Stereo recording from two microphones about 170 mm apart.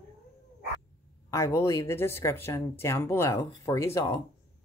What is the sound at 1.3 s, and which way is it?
Speech, 15° left (ahead or behind).